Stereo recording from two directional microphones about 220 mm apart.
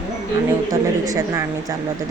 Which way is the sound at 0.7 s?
15° right (ahead or behind).